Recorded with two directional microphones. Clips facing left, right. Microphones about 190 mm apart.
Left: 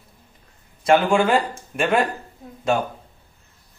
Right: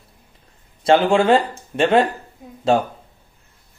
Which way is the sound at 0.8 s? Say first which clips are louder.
Right 3 dB; 30° right (ahead or behind).